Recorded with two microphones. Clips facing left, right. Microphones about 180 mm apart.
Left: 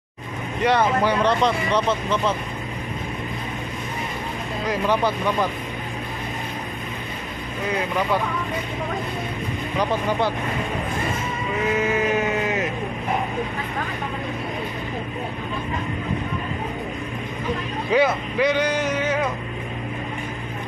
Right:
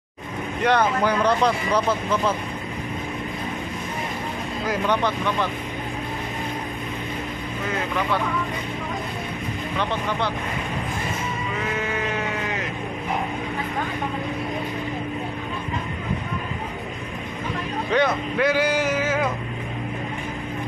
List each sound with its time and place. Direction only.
0.6 s speech: centre (ahead or behind)
4.6 s speech: 5° left (ahead or behind)
11.8 s a sound: 20° left (ahead or behind)
17.9 s speech: centre (ahead or behind)